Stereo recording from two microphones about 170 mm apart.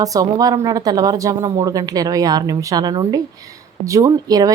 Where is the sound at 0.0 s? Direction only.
20° right (ahead or behind).